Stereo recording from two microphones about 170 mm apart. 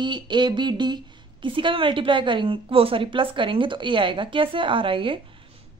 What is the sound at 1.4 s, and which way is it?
A woman's voice, 30° right (ahead or behind).